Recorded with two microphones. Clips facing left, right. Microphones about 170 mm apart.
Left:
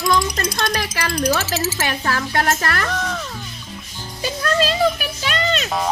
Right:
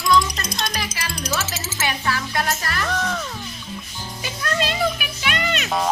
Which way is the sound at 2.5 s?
60° left (ahead or behind).